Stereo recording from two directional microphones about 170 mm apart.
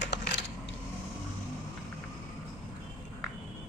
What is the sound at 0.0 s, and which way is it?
Coin, 90° left.